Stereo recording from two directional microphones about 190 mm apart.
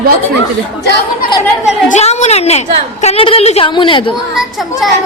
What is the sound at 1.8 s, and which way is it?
A woman's voice, 35° left (ahead or behind).